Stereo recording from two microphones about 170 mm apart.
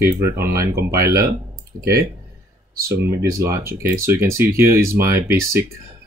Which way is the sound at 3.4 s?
15° right (ahead or behind).